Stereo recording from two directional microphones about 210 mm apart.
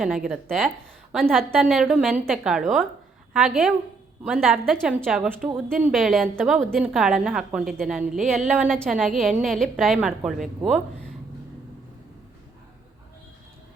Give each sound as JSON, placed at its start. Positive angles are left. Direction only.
{"t": 0.3, "sound": "a woman's voice", "side_deg": 0}